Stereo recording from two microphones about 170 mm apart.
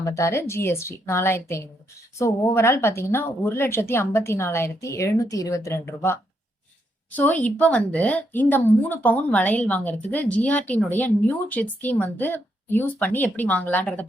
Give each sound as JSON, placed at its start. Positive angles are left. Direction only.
{"t": 0.0, "sound": "speech", "side_deg": 15}